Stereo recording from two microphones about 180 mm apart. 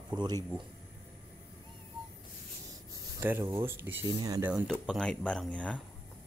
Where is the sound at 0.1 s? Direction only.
25° right (ahead or behind).